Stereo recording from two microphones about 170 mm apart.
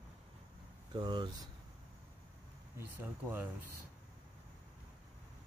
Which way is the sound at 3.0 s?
10° right (ahead or behind).